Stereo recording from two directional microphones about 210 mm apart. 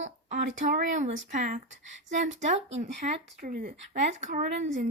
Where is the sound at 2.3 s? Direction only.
35° right (ahead or behind).